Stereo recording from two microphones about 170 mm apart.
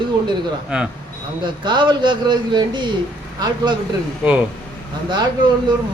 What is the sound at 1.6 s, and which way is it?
Speech, 25° right (ahead or behind).